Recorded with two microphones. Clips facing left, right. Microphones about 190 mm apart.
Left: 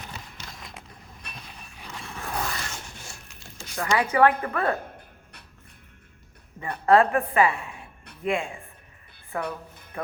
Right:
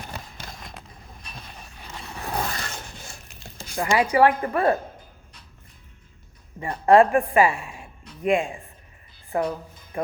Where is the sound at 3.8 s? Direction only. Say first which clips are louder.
Right 2 dB; 25° right (ahead or behind).